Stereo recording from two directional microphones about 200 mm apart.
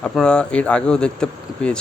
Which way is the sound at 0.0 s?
5° left (ahead or behind).